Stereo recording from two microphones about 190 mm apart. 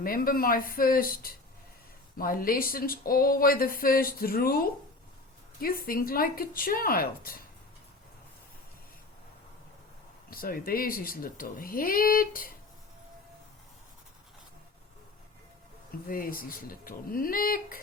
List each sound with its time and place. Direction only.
0.0 s speech: 50° left (ahead or behind)
10.2 s speech: 50° left (ahead or behind)
16.0 s speech: 50° left (ahead or behind)